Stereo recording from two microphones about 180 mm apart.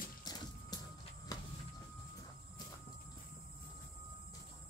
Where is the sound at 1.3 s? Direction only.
20° left (ahead or behind).